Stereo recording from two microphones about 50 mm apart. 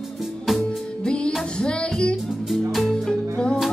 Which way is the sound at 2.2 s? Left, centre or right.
Centre.